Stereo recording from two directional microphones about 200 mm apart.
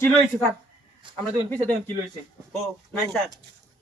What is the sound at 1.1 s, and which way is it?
Speech, 5° left (ahead or behind).